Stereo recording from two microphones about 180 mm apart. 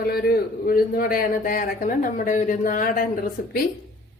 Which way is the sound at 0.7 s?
55° left (ahead or behind).